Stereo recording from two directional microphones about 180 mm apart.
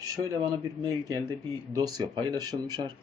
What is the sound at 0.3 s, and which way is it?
Speech, 20° right (ahead or behind).